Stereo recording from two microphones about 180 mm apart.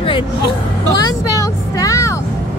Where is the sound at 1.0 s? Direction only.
20° left (ahead or behind).